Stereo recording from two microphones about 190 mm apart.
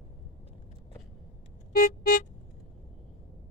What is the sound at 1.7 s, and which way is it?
Music, 50° left (ahead or behind).